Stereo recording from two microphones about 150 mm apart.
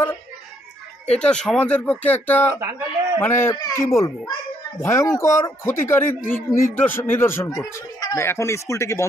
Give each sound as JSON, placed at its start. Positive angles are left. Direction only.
{"t": 1.1, "sound": "a man's voice", "side_deg": 5}